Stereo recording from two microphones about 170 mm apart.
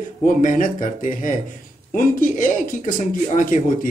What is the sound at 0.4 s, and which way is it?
Speech, 50° left (ahead or behind).